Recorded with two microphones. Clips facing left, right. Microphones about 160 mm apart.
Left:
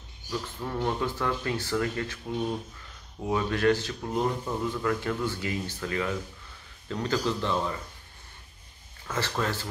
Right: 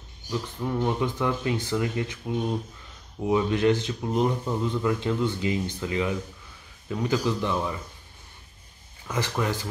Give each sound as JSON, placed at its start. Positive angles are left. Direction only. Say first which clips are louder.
{"t": 0.3, "sound": "speech", "louder": "right 4 dB", "side_deg": -15}
{"t": 9.0, "sound": "speech", "louder": "right 2 dB", "side_deg": -15}